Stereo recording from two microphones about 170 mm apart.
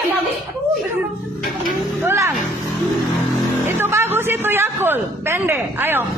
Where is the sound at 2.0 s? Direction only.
15° right (ahead or behind).